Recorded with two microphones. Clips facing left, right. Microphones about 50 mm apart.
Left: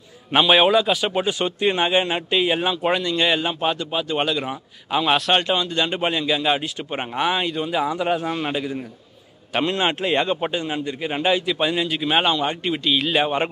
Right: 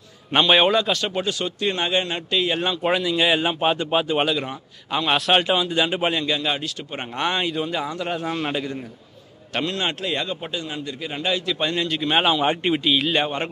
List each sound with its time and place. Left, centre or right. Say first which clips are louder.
0.3 s a man's voice: left 1 dB; centre
3.7 s a man's voice: right 4 dB; right
4.2 s speech: even; centre
9.7 s a man's voice: left 5 dB; left; by 12.4 s centre
12.4 s a man's voice: right 3 dB; centre
12.8 s speech: left 3 dB; centre